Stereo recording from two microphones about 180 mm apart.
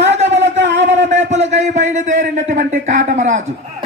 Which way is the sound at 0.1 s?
40° right (ahead or behind).